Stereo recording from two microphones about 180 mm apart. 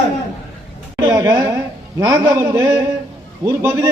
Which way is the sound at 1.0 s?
15° right (ahead or behind).